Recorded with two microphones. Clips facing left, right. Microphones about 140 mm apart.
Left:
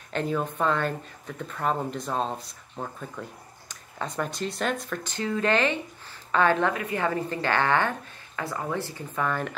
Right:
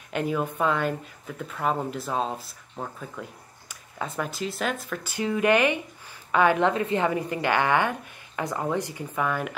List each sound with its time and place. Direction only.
0.1 s speech: 10° right (ahead or behind)
6.7 s speech: 25° right (ahead or behind); by 9.6 s 10° right (ahead or behind)